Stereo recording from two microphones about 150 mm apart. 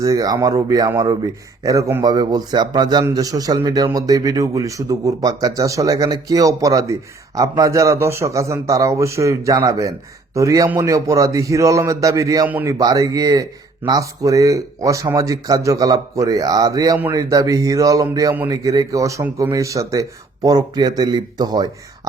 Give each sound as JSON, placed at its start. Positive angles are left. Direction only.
{"t": 0.0, "sound": "a man's voice", "side_deg": -25}
{"t": 12.8, "sound": "a man's voice", "side_deg": -25}